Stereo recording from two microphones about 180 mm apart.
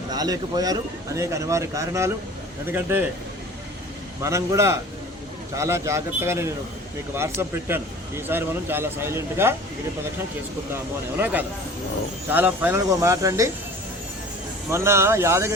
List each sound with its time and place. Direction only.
0.1 s a man's voice: 20° right (ahead or behind)
4.2 s a man's voice: 15° right (ahead or behind)
11.2 s a man's voice: 10° right (ahead or behind)
14.7 s a man's voice: 15° right (ahead or behind)